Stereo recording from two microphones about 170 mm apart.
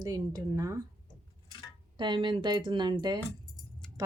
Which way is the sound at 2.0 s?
30° right (ahead or behind).